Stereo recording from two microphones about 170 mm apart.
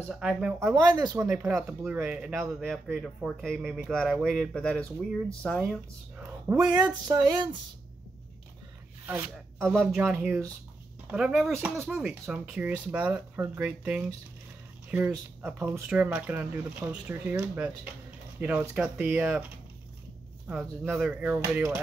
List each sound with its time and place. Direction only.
0.1 s speech: 5° right (ahead or behind)
0.6 s speech: 15° right (ahead or behind)
2.7 s speech: centre (ahead or behind)
6.1 s a sound: 10° right (ahead or behind)
6.9 s music: 25° right (ahead or behind)
9.0 s speech: 15° right (ahead or behind)
9.8 s speech: centre (ahead or behind)
10.0 s speech: 10° right (ahead or behind)
20.4 s speech: 10° right (ahead or behind)